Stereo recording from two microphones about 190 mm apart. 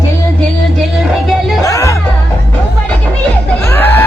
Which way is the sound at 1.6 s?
15° left (ahead or behind).